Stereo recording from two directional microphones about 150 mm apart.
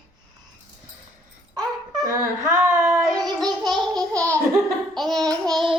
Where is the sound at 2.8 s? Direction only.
15° right (ahead or behind).